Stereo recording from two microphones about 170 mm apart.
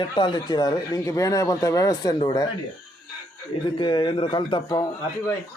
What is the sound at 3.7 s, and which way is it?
Speech, 30° left (ahead or behind).